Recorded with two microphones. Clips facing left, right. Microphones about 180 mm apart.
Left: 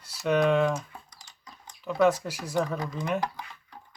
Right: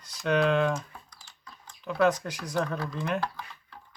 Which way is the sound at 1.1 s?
20° left (ahead or behind).